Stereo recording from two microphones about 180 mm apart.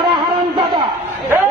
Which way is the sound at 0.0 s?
25° right (ahead or behind).